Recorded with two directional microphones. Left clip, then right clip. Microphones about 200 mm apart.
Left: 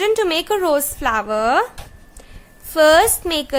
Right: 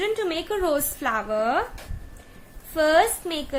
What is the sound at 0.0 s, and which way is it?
A woman's voice, 35° left (ahead or behind).